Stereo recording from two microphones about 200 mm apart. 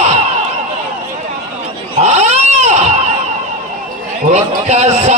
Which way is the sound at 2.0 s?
35° right (ahead or behind).